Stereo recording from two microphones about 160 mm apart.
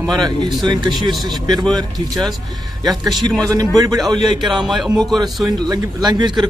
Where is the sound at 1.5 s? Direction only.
25° right (ahead or behind).